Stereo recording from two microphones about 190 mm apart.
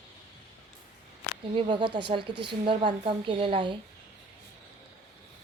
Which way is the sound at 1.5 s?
25° right (ahead or behind).